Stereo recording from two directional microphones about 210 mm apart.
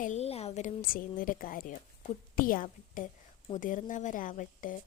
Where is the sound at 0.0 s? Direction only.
30° left (ahead or behind).